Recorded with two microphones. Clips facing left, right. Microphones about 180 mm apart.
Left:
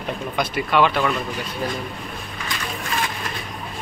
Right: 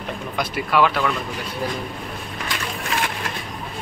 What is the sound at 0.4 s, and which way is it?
Speech, 5° right (ahead or behind).